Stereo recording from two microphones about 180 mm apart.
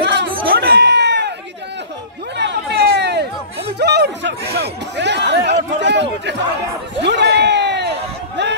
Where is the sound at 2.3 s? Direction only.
70° right (ahead or behind).